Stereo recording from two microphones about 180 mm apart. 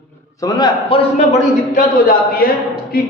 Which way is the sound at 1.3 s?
50° left (ahead or behind).